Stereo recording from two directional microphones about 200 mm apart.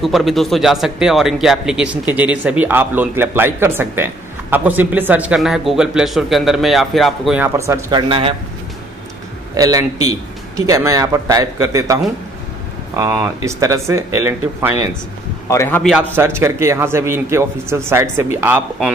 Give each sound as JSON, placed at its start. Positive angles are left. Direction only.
{"t": 0.0, "sound": "speech", "side_deg": 0}
{"t": 8.1, "sound": "speech", "side_deg": -25}
{"t": 9.6, "sound": "speech", "side_deg": -20}
{"t": 15.5, "sound": "a man's voice", "side_deg": 15}
{"t": 15.8, "sound": "speech", "side_deg": -5}